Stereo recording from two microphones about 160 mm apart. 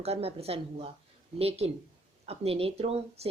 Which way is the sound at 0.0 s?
40° right (ahead or behind).